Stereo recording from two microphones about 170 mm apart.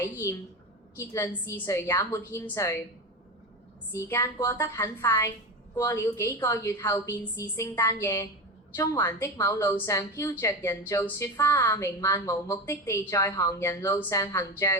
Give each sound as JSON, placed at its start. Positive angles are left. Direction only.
{"t": 0.0, "sound": "a woman's voice", "side_deg": 15}
{"t": 3.9, "sound": "a woman's voice", "side_deg": 15}